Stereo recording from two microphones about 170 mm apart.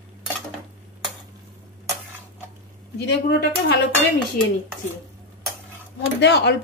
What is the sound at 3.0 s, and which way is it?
Speech, 80° left.